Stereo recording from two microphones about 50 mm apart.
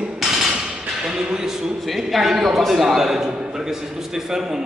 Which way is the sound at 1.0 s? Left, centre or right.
Centre.